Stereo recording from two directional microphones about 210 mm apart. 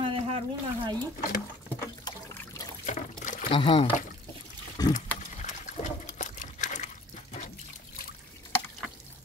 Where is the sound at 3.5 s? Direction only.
25° left (ahead or behind).